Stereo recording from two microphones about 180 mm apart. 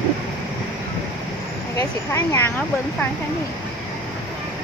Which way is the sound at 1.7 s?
15° left (ahead or behind).